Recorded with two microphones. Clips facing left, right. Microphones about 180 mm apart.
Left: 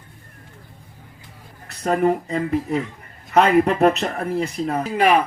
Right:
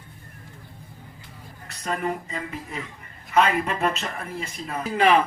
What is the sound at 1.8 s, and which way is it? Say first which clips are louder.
Speech: left 9 dB; 55° left (ahead or behind).